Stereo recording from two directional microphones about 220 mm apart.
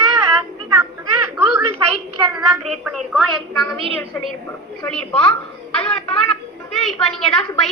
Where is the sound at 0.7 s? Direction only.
10° right (ahead or behind).